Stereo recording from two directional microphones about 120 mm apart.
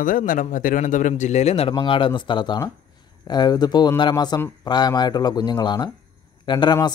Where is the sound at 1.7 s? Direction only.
45° left (ahead or behind).